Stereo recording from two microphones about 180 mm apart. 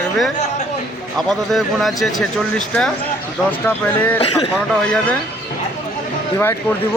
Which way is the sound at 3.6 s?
10° left (ahead or behind).